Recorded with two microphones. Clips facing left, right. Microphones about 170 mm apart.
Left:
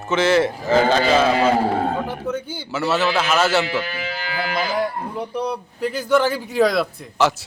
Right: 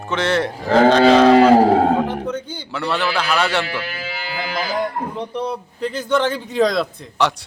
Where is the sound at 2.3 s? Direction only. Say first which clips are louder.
Even; 5° left (ahead or behind).